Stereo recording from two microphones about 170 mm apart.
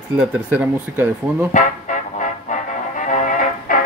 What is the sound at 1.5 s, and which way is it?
Music, 45° left (ahead or behind).